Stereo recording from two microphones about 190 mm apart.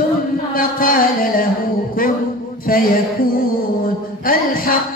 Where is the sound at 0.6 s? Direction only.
50° left (ahead or behind).